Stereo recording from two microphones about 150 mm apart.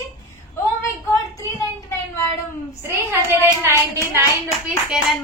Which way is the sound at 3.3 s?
15° right (ahead or behind).